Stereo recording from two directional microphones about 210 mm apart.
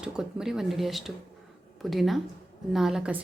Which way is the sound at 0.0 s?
5° right (ahead or behind).